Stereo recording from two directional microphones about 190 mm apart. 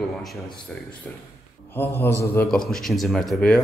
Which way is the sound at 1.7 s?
10° left (ahead or behind).